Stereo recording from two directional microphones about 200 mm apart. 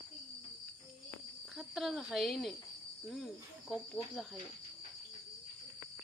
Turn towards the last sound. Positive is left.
turn(degrees=0)  # may be behind; listen again after turning